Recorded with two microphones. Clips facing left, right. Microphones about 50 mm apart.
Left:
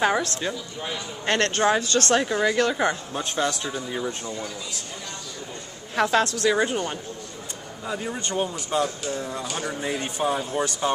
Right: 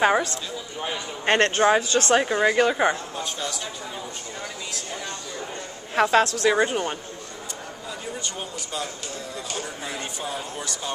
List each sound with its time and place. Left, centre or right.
0.0 s speech: centre
0.8 s speech: right
3.3 s a man's voice: left
5.9 s speech: centre
7.9 s speech: left